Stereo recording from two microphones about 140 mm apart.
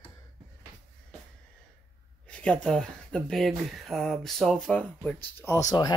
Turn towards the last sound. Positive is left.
turn(degrees=30)  # may be behind; listen again after turning